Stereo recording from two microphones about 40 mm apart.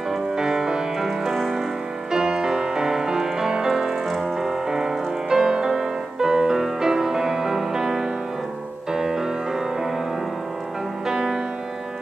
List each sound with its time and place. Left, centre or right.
0.1 s music: centre
1.0 s music: centre
11.1 s music: centre